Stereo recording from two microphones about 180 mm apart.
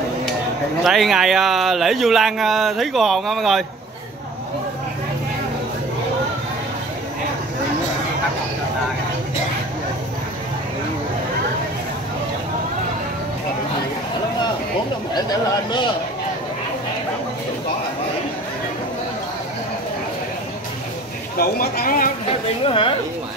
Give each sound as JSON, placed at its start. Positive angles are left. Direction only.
{"t": 0.8, "sound": "speech", "side_deg": 0}
{"t": 15.1, "sound": "speech", "side_deg": 25}
{"t": 21.4, "sound": "speech", "side_deg": 55}
{"t": 22.7, "sound": "speech", "side_deg": 30}